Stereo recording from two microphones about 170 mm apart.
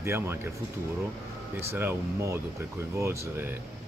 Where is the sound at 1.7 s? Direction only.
15° right (ahead or behind).